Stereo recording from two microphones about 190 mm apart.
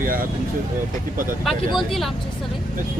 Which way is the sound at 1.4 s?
Centre (ahead or behind).